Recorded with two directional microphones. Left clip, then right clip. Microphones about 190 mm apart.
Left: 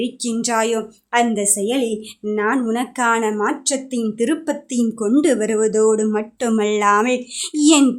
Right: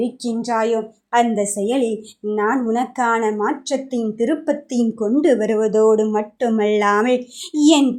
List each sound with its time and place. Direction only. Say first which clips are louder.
0.0 s a woman's voice: even; 5° left (ahead or behind)